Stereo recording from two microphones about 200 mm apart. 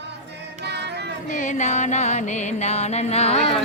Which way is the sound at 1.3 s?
40° left (ahead or behind).